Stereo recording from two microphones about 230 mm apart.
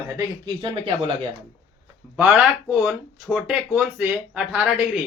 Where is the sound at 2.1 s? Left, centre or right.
Centre.